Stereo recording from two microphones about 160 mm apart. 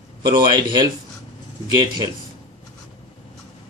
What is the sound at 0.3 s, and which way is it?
Speech, 25° right (ahead or behind).